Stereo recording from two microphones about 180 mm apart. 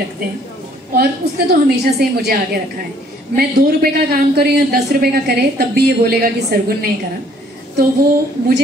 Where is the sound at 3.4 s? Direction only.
60° right (ahead or behind).